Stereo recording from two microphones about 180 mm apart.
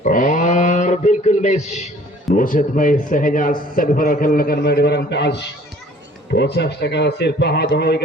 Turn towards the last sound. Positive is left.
turn(degrees=65)  # may be behind; listen again after turning